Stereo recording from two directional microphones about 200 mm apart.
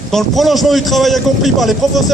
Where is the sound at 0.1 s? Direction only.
Centre (ahead or behind).